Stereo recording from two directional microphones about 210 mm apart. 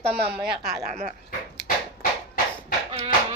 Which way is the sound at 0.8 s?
30° right (ahead or behind).